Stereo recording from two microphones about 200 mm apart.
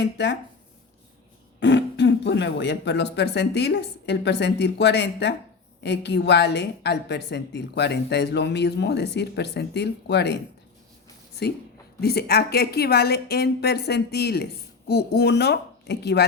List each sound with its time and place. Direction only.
0.0 s a woman's voice: 60° left (ahead or behind)
1.5 s a woman's voice: 60° left (ahead or behind)
11.9 s speech: 50° left (ahead or behind)